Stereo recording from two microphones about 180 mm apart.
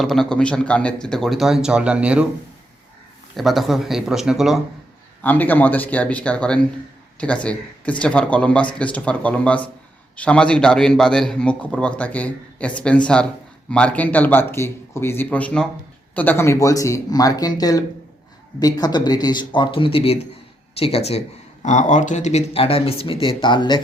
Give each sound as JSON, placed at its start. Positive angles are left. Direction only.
{"t": 0.0, "sound": "a man's voice", "side_deg": 0}
{"t": 3.3, "sound": "a man's voice", "side_deg": 0}
{"t": 5.2, "sound": "a man's voice", "side_deg": 10}